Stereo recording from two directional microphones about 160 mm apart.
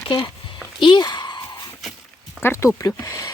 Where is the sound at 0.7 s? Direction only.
30° left (ahead or behind).